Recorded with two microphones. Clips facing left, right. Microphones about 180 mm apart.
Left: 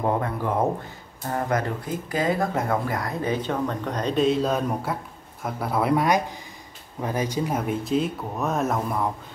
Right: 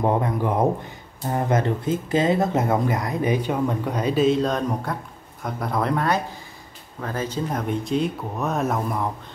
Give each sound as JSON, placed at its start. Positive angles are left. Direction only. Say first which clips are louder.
{"t": 0.0, "sound": "speech", "louder": "right 3 dB", "side_deg": -20}